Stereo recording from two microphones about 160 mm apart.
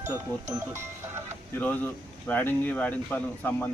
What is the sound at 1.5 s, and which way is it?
Speech, 10° left (ahead or behind).